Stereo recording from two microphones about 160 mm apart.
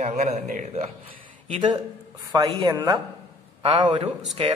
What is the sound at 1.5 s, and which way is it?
A man's voice, 30° right (ahead or behind).